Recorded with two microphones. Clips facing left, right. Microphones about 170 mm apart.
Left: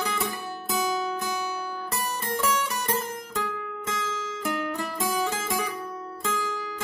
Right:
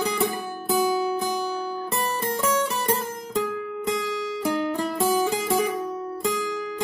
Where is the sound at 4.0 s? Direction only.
20° right (ahead or behind).